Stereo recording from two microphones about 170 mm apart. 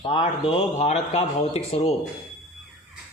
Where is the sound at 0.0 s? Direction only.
30° left (ahead or behind).